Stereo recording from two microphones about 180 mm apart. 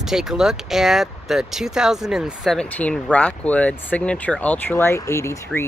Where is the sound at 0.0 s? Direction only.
Centre (ahead or behind).